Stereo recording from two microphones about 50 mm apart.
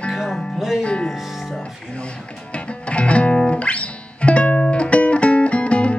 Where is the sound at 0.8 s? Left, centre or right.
Left.